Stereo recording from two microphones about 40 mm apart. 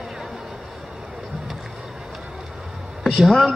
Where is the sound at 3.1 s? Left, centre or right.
Centre.